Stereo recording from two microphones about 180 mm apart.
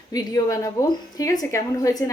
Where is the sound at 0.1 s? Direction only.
20° left (ahead or behind).